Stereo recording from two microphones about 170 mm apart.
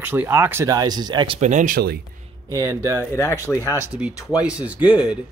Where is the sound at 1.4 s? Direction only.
45° right (ahead or behind).